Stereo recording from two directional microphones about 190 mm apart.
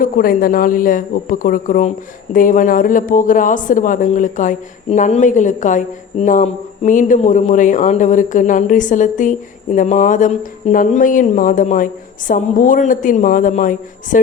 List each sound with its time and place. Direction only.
0.0 s speech: 50° left (ahead or behind)